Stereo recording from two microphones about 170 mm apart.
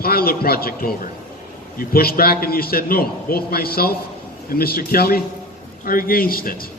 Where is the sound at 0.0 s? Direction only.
60° left (ahead or behind).